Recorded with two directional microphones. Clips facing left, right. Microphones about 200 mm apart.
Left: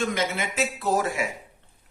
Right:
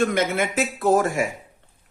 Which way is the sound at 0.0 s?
55° right (ahead or behind).